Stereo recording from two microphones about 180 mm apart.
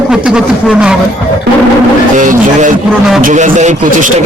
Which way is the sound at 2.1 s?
45° right (ahead or behind).